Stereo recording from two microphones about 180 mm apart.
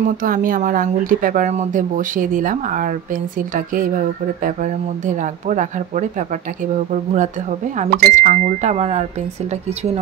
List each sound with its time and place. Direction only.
0.0 s speech: 50° right (ahead or behind)